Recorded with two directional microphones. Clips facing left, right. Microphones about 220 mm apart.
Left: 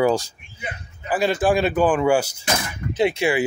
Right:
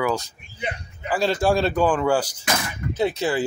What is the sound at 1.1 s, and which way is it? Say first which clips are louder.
Speech: left 1 dB; 15° left (ahead or behind).